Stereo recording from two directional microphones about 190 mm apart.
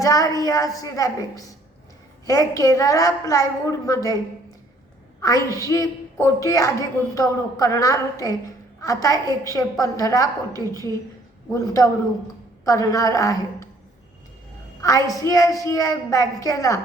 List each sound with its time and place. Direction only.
0.0 s speech: 20° left (ahead or behind)
5.6 s a woman's voice: 15° left (ahead or behind)
10.5 s a woman's voice: 20° right (ahead or behind)
11.5 s speech: 15° left (ahead or behind)
14.8 s speech: 15° left (ahead or behind)